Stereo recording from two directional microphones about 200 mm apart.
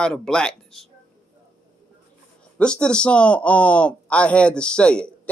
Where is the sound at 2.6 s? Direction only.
5° left (ahead or behind).